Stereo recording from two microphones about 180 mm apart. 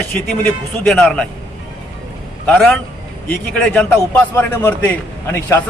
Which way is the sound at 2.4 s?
5° left (ahead or behind).